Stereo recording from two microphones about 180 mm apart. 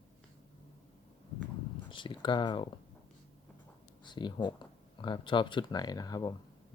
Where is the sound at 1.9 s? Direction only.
25° left (ahead or behind).